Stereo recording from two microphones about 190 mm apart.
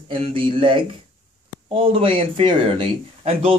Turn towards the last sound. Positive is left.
turn(degrees=-30)  # may be behind; listen again after turning